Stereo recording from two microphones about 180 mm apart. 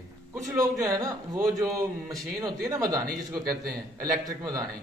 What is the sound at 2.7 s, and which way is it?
Speech, 20° right (ahead or behind).